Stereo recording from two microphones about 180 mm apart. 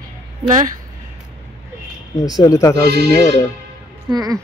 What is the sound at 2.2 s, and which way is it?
Speech, 20° left (ahead or behind).